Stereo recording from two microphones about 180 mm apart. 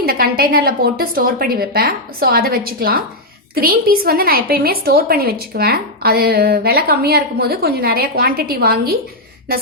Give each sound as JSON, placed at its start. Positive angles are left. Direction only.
{"t": 0.0, "sound": "a woman's voice", "side_deg": -55}